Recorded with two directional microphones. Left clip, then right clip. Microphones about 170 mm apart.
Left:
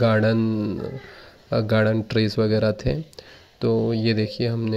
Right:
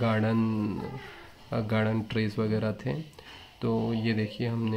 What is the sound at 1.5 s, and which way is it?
Speech, 35° left (ahead or behind).